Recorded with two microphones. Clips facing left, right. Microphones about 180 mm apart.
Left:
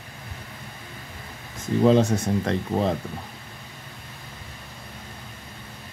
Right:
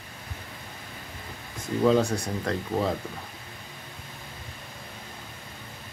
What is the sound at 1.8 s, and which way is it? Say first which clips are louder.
Speech: left 3 dB; 25° left (ahead or behind).